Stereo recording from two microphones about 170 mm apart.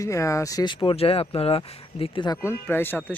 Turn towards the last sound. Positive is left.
turn(degrees=10)  # may be behind; listen again after turning